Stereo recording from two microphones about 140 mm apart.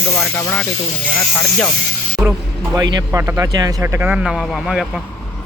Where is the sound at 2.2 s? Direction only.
10° right (ahead or behind).